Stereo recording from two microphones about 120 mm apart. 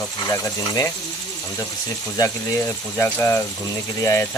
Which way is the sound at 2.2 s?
20° left (ahead or behind).